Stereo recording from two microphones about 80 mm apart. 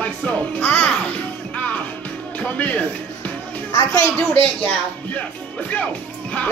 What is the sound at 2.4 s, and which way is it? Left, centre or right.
Speech, centre.